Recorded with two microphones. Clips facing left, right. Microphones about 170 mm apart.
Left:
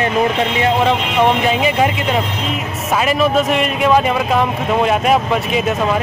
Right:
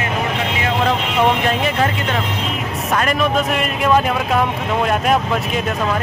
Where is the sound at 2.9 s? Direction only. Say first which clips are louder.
Left 3 dB; 5° left (ahead or behind).